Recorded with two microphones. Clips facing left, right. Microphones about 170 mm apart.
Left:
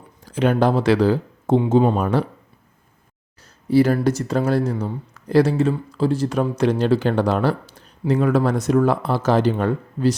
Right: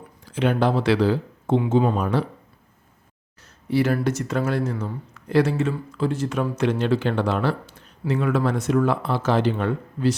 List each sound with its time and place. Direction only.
0.3 s speech: 40° left (ahead or behind)
2.0 s speech: 45° left (ahead or behind)
3.7 s speech: 35° left (ahead or behind)